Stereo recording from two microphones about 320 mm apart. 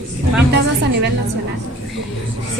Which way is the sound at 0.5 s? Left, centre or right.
Right.